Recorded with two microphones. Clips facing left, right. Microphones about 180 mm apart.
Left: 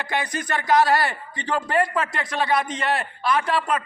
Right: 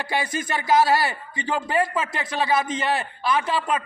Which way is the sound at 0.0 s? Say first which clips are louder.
Right 1 dB; 10° right (ahead or behind).